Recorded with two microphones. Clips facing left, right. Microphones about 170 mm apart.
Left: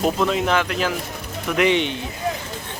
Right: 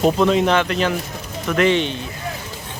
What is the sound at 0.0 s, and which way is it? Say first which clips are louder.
Speech: right 4 dB; centre (ahead or behind).